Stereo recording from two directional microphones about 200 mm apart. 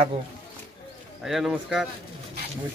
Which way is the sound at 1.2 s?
Centre (ahead or behind).